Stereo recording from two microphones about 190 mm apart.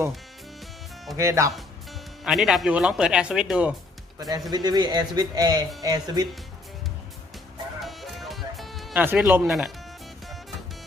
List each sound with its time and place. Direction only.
1.1 s speech: 15° right (ahead or behind)
2.2 s speech: centre (ahead or behind)
4.5 s speech: 20° right (ahead or behind)
7.8 s music: centre (ahead or behind)